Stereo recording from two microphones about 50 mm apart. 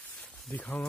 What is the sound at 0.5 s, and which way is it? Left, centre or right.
Speech, left.